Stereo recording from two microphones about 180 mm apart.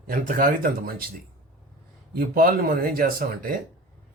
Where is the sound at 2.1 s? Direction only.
55° right (ahead or behind).